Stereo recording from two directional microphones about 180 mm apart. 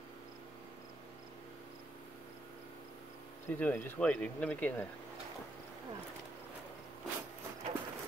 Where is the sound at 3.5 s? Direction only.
10° left (ahead or behind).